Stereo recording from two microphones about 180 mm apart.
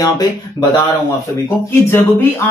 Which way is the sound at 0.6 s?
20° right (ahead or behind).